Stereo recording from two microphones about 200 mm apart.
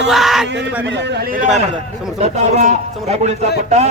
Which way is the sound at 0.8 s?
60° right (ahead or behind).